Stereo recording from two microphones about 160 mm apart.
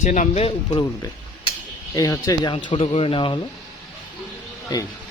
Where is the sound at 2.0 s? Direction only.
20° left (ahead or behind).